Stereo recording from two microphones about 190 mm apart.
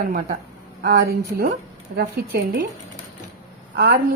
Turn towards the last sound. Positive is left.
turn(degrees=-55)  # may be behind; listen again after turning